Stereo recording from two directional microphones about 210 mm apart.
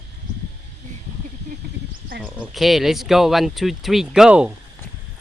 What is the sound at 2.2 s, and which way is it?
Speech, 5° right (ahead or behind).